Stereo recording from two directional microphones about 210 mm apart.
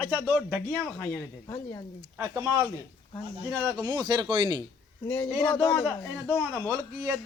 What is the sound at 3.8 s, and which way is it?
Speech, 20° right (ahead or behind).